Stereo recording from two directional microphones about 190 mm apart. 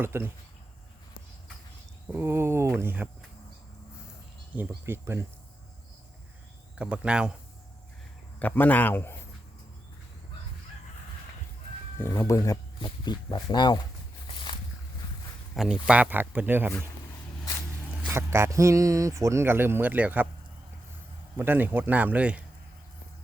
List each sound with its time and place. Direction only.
0.0 s speech: 10° right (ahead or behind)
2.1 s speech: 15° right (ahead or behind)
4.9 s speech: 15° right (ahead or behind)
6.7 s speech: 5° right (ahead or behind)
8.4 s a man's voice: 10° left (ahead or behind)
11.9 s speech: 15° left (ahead or behind)
15.5 s speech: centre (ahead or behind)
18.1 s speech: 15° right (ahead or behind)
21.3 s speech: 10° right (ahead or behind)